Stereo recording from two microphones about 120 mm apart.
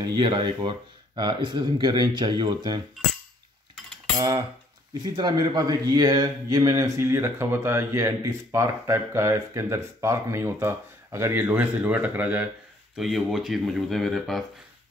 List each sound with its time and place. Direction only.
0.0 s speech: 40° right (ahead or behind)
4.9 s a man's voice: 35° right (ahead or behind); by 14.4 s centre (ahead or behind)